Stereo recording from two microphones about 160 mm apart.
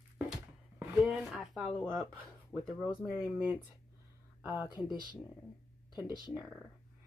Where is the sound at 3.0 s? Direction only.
5° right (ahead or behind).